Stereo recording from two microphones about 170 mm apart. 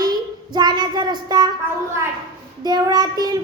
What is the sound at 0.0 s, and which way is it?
Child singing, 25° right (ahead or behind).